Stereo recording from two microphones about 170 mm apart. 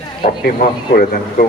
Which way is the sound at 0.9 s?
60° left (ahead or behind).